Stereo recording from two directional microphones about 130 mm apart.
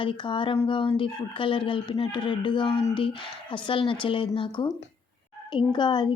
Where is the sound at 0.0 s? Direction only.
40° left (ahead or behind).